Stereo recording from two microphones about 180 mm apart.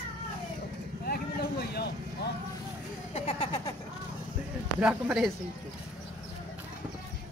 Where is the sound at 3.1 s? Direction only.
35° left (ahead or behind).